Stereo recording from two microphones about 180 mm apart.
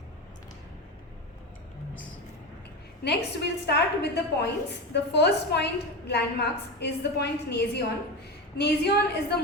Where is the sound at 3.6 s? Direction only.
65° left (ahead or behind).